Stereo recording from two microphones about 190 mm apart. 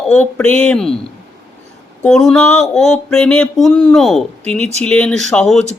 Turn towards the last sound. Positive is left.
turn(degrees=5)  # may be behind; listen again after turning